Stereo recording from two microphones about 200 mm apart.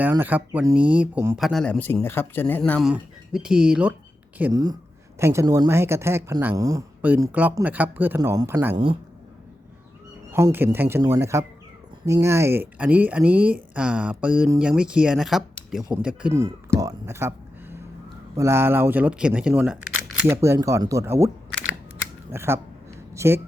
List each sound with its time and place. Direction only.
0.0 s speech: 10° right (ahead or behind)
8.7 s speech: 25° right (ahead or behind)
10.3 s speech: 10° right (ahead or behind)
22.3 s speech: 10° right (ahead or behind)